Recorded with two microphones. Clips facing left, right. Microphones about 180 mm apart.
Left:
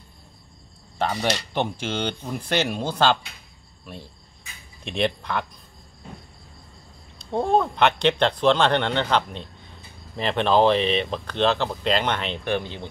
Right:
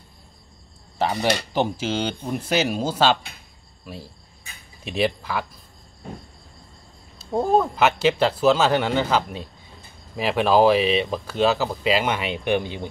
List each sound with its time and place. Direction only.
1.5 s speech: 5° right (ahead or behind)
3.8 s cricket: 5° right (ahead or behind)
4.8 s speech: 5° right (ahead or behind)
7.2 s speech: 5° right (ahead or behind)